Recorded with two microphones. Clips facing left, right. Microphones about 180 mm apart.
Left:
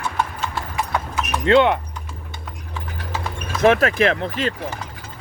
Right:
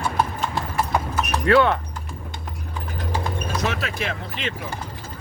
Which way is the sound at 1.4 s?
20° left (ahead or behind).